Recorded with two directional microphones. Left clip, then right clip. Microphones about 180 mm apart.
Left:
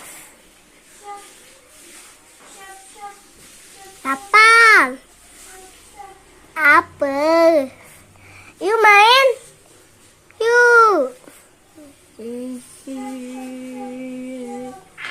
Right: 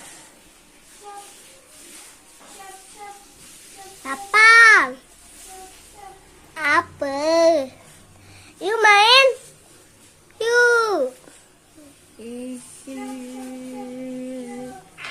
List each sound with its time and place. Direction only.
4.0 s child singing: 35° left (ahead or behind)
6.5 s child singing: 30° left (ahead or behind)
8.6 s a sound: 25° left (ahead or behind)
10.3 s babbling: 25° left (ahead or behind)